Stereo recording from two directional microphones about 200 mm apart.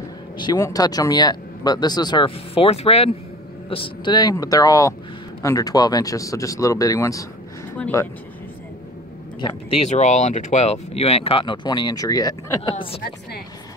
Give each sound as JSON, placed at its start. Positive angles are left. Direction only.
{"t": 0.4, "sound": "speech", "side_deg": 20}
{"t": 9.4, "sound": "speech", "side_deg": 25}